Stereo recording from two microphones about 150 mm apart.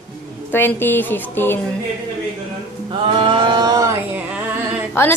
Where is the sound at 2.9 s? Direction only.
35° right (ahead or behind).